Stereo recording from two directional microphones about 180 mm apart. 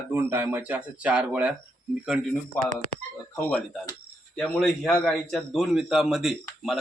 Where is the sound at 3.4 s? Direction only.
5° left (ahead or behind).